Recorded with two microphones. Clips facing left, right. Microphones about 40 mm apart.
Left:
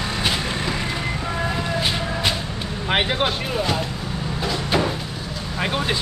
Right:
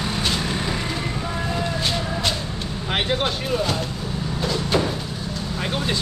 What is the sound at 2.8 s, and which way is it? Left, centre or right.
Speech, centre.